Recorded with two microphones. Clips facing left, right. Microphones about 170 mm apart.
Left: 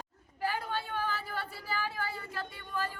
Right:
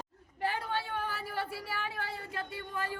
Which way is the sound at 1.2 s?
65° right (ahead or behind).